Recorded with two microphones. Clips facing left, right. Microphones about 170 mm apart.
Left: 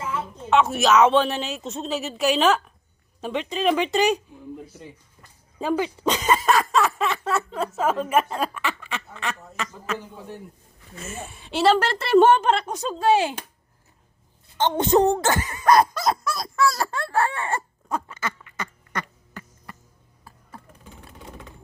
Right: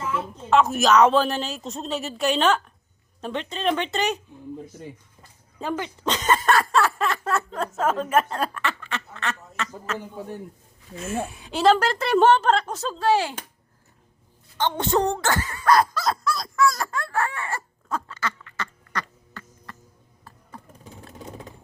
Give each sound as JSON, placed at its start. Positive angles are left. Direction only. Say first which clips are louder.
{"t": 0.5, "sound": "a woman's voice", "louder": "even", "side_deg": 0}
{"t": 5.5, "sound": "speech", "louder": "left 5 dB", "side_deg": 15}
{"t": 11.3, "sound": "speech", "louder": "even", "side_deg": 0}
{"t": 14.6, "sound": "speech", "louder": "left 4 dB", "side_deg": 20}
{"t": 17.8, "sound": "duck", "louder": "left 1 dB", "side_deg": 15}